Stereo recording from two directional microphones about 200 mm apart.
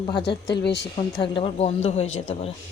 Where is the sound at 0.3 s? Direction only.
20° left (ahead or behind).